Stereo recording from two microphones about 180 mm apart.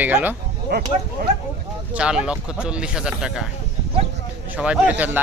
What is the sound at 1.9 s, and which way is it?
Speech, 5° right (ahead or behind).